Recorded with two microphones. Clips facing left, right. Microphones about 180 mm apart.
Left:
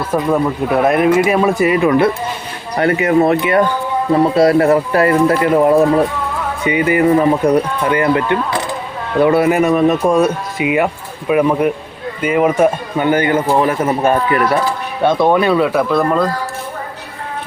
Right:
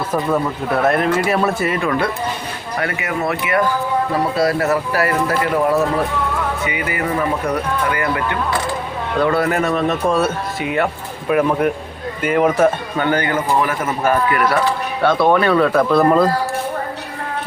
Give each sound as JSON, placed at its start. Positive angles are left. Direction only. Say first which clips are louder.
{"t": 0.1, "sound": "a man's voice", "louder": "left 5 dB", "side_deg": 10}
{"t": 2.7, "sound": "speech", "louder": "left 10 dB", "side_deg": 30}
{"t": 9.4, "sound": "a man's voice", "louder": "left 6 dB", "side_deg": 15}